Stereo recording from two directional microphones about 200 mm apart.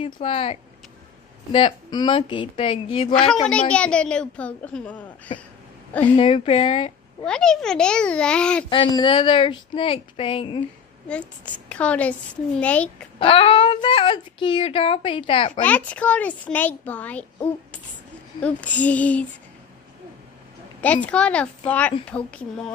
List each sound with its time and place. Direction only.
0.0 s speech: 30° left (ahead or behind)
3.4 s a woman's voice: 5° left (ahead or behind)
6.0 s speech: 30° left (ahead or behind)
7.2 s a woman's voice: 5° left (ahead or behind)
8.9 s speech: 25° left (ahead or behind)
11.1 s a woman's voice: 5° left (ahead or behind)
13.2 s speech: 30° left (ahead or behind)
15.6 s a woman's voice: 5° left (ahead or behind)
18.4 s a woman's voice: 5° left (ahead or behind)
20.8 s a woman's voice: 5° left (ahead or behind)